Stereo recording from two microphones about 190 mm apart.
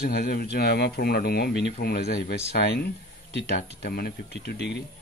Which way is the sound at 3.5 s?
55° left (ahead or behind).